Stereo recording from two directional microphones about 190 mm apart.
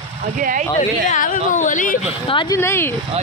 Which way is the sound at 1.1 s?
40° left (ahead or behind).